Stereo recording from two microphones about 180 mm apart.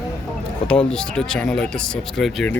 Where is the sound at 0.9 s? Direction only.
5° left (ahead or behind).